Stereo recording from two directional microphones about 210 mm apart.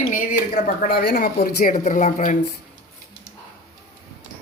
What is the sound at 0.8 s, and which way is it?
A woman's voice, 50° left (ahead or behind).